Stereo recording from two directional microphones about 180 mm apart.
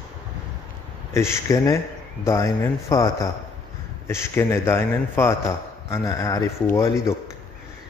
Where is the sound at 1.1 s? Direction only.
15° left (ahead or behind).